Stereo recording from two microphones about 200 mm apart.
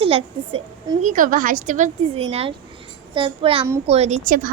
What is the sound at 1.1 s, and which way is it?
A woman's voice, 40° right (ahead or behind).